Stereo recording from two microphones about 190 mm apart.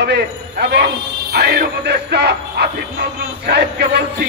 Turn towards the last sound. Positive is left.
turn(degrees=-60)  # may be behind; listen again after turning